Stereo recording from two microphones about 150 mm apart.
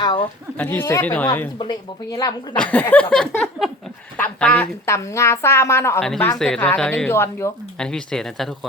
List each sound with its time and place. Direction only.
0.0 s speech: 30° left (ahead or behind)
0.5 s a woman's voice: 10° left (ahead or behind)
1.5 s speech: 25° left (ahead or behind)
2.6 s a woman's voice: 10° left (ahead or behind)
6.0 s a woman's voice: 5° left (ahead or behind)
7.1 s a woman's voice: 15° left (ahead or behind)
7.8 s speech: 5° left (ahead or behind)